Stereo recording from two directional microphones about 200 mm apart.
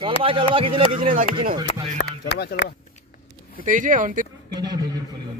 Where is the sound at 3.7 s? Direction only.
40° right (ahead or behind).